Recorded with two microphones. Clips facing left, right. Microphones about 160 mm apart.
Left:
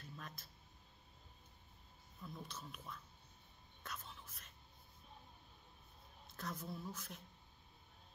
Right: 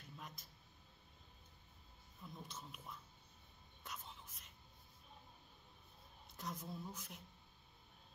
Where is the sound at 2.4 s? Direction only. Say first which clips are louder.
Left 2 dB; 20° right (ahead or behind).